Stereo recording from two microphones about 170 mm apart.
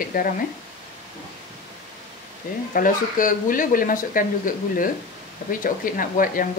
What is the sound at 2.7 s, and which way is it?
Speech, 50° left (ahead or behind).